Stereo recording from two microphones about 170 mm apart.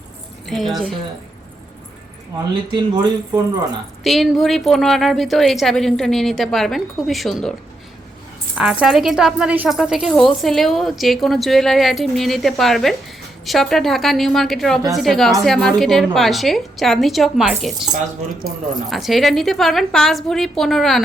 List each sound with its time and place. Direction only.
0.4 s speech: centre (ahead or behind)
2.7 s speech: 20° right (ahead or behind)
4.0 s speech: centre (ahead or behind)
8.5 s speech: 5° right (ahead or behind)
18.9 s speech: centre (ahead or behind)